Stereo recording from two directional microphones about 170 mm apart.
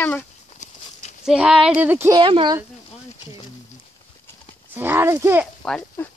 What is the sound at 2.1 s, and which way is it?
Speech, 25° right (ahead or behind).